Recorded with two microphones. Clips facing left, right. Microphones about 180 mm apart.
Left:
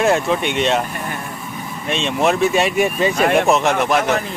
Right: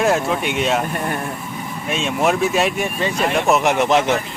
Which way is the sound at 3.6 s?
20° right (ahead or behind).